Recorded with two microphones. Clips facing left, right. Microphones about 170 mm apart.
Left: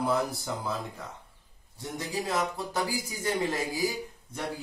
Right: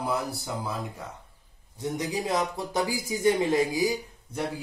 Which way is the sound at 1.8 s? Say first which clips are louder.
Right 4 dB; 15° right (ahead or behind).